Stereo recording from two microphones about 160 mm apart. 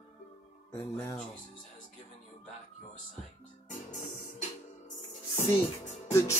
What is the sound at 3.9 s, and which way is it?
Music, 50° left (ahead or behind).